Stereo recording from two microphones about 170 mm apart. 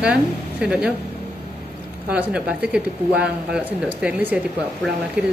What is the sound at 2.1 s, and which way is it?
Speech, 5° right (ahead or behind).